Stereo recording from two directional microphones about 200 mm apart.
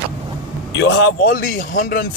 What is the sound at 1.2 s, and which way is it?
Speech, 45° left (ahead or behind).